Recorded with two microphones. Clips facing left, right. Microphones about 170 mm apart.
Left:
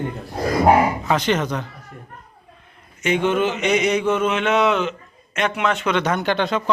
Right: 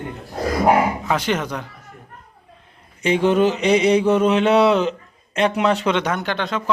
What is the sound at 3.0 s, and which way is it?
Mantra, 35° right (ahead or behind).